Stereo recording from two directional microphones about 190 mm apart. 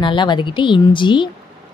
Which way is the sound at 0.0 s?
25° left (ahead or behind).